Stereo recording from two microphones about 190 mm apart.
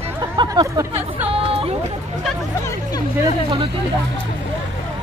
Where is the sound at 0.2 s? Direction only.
20° right (ahead or behind).